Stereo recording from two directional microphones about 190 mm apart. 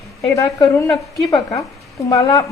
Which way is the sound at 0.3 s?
15° left (ahead or behind).